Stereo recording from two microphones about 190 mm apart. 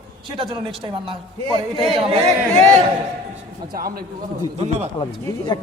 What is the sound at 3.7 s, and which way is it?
Speech, 50° right (ahead or behind).